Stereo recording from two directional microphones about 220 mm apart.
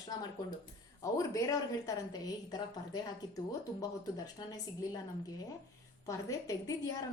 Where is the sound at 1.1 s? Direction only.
15° left (ahead or behind).